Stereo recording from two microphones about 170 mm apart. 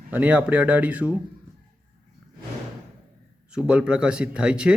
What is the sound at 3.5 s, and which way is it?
Speech, 5° right (ahead or behind).